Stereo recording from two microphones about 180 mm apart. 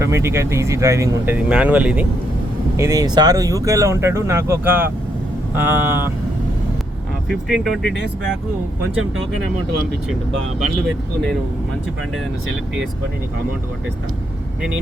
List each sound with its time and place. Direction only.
0.0 s speech: 15° right (ahead or behind)
7.3 s speech: centre (ahead or behind)
12.1 s speech: 90° right